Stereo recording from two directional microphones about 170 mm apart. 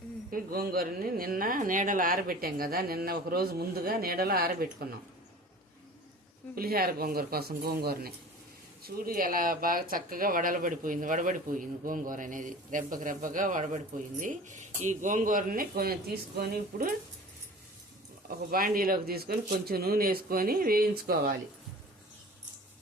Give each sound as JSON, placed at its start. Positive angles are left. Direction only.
{"t": 0.3, "sound": "speech", "side_deg": -60}
{"t": 6.6, "sound": "speech", "side_deg": -60}
{"t": 18.3, "sound": "speech", "side_deg": -60}